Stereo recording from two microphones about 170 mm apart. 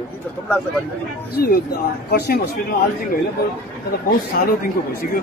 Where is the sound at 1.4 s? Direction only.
65° left (ahead or behind).